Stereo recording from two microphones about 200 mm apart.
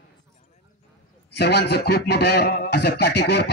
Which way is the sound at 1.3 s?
55° left (ahead or behind).